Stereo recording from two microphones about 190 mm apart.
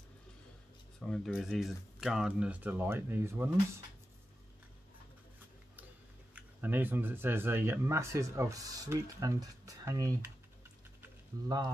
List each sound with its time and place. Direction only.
0.9 s speech: 5° left (ahead or behind)
6.3 s speech: 10° right (ahead or behind)
11.0 s a sound: 20° right (ahead or behind)